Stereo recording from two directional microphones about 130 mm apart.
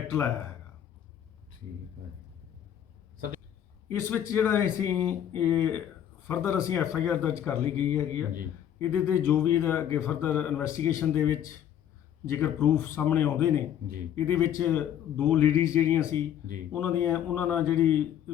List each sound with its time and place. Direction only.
4.3 s a man's voice: 20° left (ahead or behind)